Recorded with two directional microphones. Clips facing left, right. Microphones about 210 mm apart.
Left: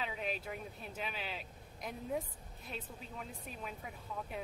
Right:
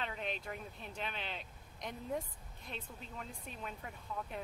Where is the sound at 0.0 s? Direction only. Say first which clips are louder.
Left 1 dB; 5° left (ahead or behind).